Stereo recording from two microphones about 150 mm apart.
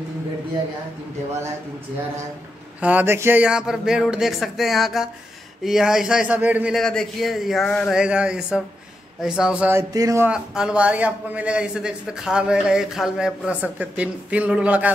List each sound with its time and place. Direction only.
2.8 s speech: 10° right (ahead or behind)
6.7 s speech: 5° left (ahead or behind)
9.8 s speech: 20° right (ahead or behind)
10.2 s speech: 5° right (ahead or behind)